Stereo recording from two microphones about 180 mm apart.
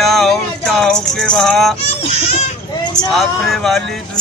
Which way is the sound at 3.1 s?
Centre (ahead or behind).